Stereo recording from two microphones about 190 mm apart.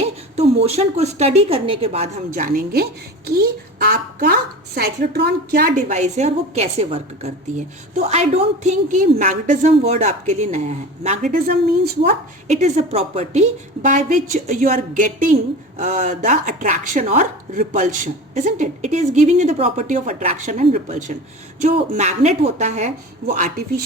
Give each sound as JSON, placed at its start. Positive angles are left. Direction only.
{"t": 0.0, "sound": "a woman's voice", "side_deg": -30}